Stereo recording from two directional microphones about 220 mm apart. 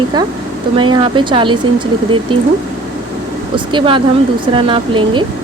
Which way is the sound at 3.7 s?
20° right (ahead or behind).